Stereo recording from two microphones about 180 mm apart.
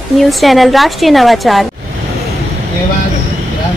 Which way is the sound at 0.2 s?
Centre (ahead or behind).